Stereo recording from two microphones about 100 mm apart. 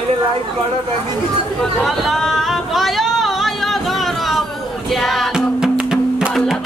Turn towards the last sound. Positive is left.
turn(degrees=-10)  # may be behind; listen again after turning